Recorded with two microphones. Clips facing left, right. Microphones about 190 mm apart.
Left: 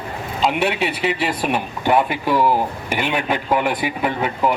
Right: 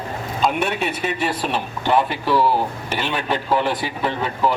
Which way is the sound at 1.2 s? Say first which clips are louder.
Left 2 dB; 10° left (ahead or behind).